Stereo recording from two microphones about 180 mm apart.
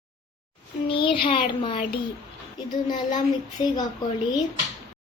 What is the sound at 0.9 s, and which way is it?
Child singing, 30° left (ahead or behind).